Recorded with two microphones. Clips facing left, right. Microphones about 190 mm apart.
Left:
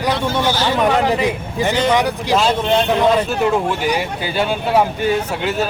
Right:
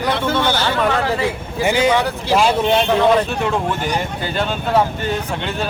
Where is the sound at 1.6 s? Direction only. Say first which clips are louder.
Right 1 dB; 10° right (ahead or behind).